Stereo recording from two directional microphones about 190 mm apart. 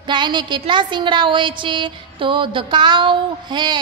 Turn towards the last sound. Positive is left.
turn(degrees=-25)  # may be behind; listen again after turning